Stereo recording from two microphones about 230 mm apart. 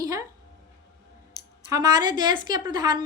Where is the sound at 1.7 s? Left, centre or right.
Centre.